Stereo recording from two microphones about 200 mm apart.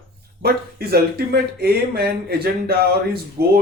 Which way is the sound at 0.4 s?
50° right (ahead or behind).